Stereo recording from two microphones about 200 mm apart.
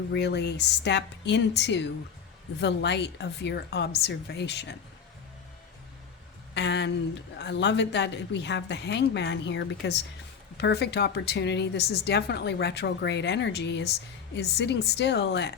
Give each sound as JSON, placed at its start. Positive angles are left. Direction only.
{"t": 0.1, "sound": "a woman's voice", "side_deg": 55}
{"t": 6.5, "sound": "a woman's voice", "side_deg": 60}